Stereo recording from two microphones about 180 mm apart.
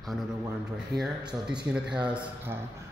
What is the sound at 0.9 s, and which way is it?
A man's voice, centre (ahead or behind).